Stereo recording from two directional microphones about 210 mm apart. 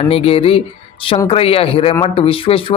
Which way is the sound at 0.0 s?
25° left (ahead or behind).